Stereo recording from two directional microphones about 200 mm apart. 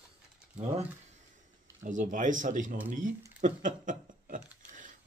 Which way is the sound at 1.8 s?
40° right (ahead or behind).